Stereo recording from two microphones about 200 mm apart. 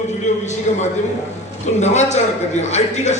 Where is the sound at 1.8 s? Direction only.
35° left (ahead or behind).